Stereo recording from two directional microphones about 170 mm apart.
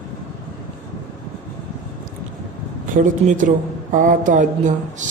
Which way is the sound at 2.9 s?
50° right (ahead or behind).